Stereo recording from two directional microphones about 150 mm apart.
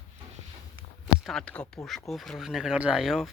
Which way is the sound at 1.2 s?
5° left (ahead or behind).